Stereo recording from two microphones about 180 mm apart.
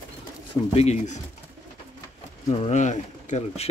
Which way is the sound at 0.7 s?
40° left (ahead or behind).